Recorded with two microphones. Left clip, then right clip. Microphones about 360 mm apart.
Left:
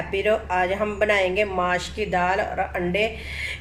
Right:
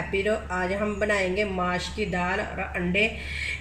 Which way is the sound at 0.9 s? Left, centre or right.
Left.